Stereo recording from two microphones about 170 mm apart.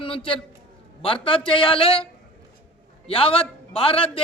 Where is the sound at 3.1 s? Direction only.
35° left (ahead or behind).